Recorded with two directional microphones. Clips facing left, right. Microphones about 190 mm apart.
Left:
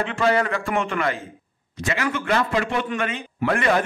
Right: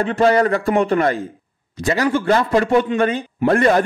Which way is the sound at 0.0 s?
40° right (ahead or behind).